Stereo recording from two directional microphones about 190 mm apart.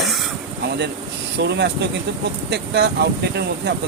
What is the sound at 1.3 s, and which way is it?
Speech, 60° right (ahead or behind).